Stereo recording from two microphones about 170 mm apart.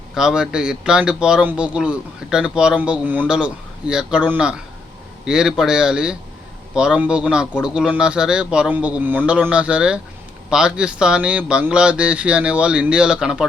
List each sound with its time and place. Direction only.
0.1 s speech: 5° right (ahead or behind)